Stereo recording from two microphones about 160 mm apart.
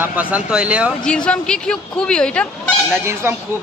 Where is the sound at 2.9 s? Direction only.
15° right (ahead or behind).